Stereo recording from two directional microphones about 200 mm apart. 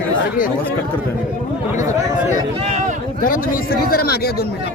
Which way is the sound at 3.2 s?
45° left (ahead or behind).